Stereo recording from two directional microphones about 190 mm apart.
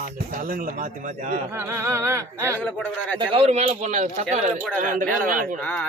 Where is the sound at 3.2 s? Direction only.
30° right (ahead or behind); by 5.6 s 45° right (ahead or behind).